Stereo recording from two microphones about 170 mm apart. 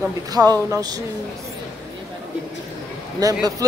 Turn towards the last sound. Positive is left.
turn(degrees=-20)  # may be behind; listen again after turning